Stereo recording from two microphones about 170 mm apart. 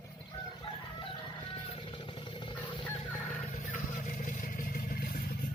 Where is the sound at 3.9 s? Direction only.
50° left (ahead or behind).